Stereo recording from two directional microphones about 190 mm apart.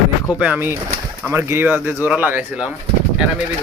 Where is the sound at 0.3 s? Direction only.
5° right (ahead or behind).